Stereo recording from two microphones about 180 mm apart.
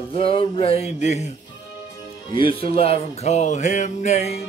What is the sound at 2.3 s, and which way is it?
Speech, 30° left (ahead or behind).